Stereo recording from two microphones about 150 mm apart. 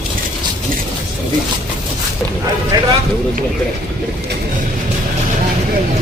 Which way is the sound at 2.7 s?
25° right (ahead or behind).